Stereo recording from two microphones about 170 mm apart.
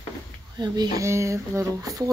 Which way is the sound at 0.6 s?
20° right (ahead or behind).